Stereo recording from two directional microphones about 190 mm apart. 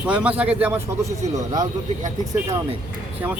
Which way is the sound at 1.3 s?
20° right (ahead or behind).